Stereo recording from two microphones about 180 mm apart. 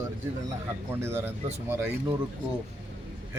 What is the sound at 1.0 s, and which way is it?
Speech, 15° right (ahead or behind).